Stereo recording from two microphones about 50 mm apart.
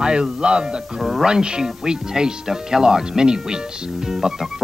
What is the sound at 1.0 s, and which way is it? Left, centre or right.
Speech, centre.